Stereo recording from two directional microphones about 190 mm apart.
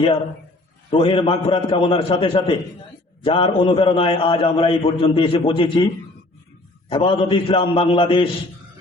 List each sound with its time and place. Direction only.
0.9 s a man's voice: 30° left (ahead or behind)
6.8 s a man's voice: 25° left (ahead or behind)